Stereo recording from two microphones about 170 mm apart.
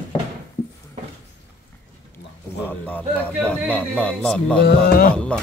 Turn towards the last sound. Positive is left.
turn(degrees=5)  # may be behind; listen again after turning